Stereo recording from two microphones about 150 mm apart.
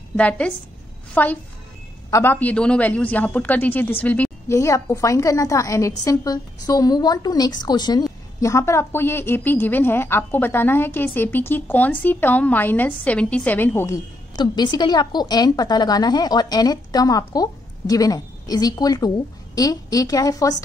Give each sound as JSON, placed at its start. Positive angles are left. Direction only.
{"t": 0.1, "sound": "a woman's voice", "side_deg": 10}
{"t": 2.0, "sound": "a man's voice", "side_deg": 20}
{"t": 2.3, "sound": "a woman's voice", "side_deg": 10}